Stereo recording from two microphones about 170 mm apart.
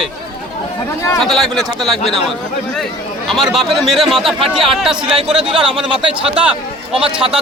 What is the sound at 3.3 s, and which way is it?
A man's voice, centre (ahead or behind).